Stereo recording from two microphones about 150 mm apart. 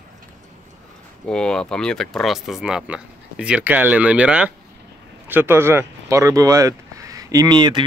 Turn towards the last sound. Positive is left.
turn(degrees=-30)  # may be behind; listen again after turning